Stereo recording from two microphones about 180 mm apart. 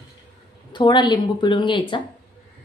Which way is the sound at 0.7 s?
25° left (ahead or behind).